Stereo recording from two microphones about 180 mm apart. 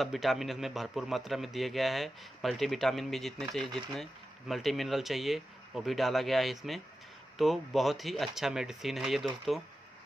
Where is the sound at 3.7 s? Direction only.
25° right (ahead or behind).